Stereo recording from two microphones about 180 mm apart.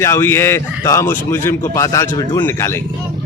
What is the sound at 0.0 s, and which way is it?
Speech, 15° left (ahead or behind).